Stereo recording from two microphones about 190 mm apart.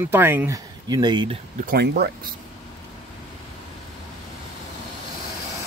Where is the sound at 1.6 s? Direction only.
55° right (ahead or behind).